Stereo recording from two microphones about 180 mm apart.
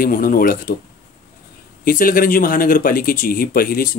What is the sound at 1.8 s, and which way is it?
Speech, 50° left (ahead or behind).